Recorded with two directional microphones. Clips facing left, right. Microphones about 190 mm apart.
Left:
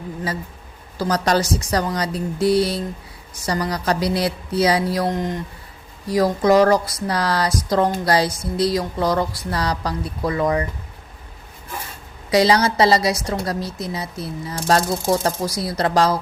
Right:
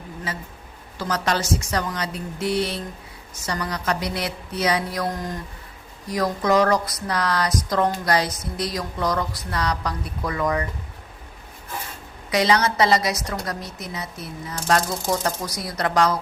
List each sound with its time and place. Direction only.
0.9 s a woman's voice: 35° left (ahead or behind)
12.3 s a woman's voice: 30° left (ahead or behind)